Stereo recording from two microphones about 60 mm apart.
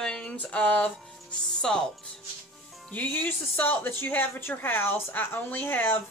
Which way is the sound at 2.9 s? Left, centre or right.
Left.